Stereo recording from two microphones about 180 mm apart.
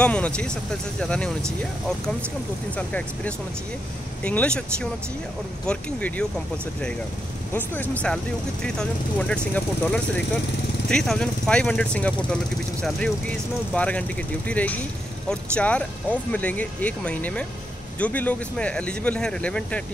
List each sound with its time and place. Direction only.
0.0 s speech: 5° left (ahead or behind)
2.7 s speech: 5° left (ahead or behind)
7.5 s speech: 10° left (ahead or behind)
13.7 s speech: 5° left (ahead or behind)